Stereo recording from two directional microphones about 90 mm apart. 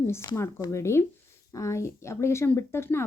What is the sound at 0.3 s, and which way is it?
A woman's voice, 30° left (ahead or behind).